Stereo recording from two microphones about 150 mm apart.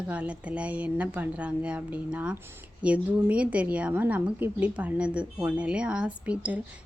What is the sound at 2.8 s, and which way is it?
A woman's voice, 10° right (ahead or behind).